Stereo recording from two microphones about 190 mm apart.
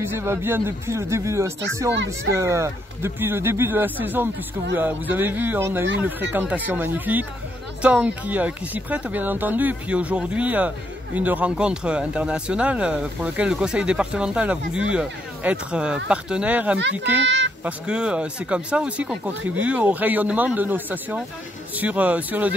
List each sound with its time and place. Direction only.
0.0 s speech: 15° right (ahead or behind)
17.2 s speech: 70° right (ahead or behind)
17.6 s speech: 5° right (ahead or behind)